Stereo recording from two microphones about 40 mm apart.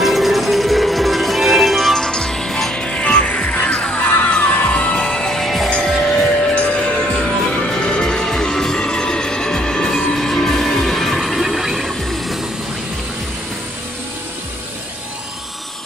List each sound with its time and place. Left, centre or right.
0.0 s music: centre
2.0 s music: centre
2.7 s music: left
5.4 s music: centre